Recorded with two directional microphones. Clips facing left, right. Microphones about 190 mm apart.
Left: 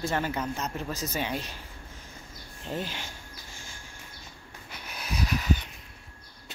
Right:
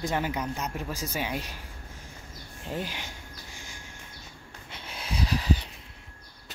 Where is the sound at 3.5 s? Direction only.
15° right (ahead or behind).